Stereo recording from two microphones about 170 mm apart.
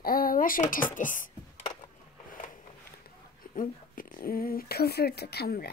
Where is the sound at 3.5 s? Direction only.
55° left (ahead or behind).